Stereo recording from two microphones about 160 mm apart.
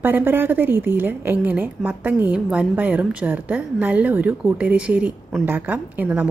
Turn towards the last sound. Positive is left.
turn(degrees=-10)  # may be behind; listen again after turning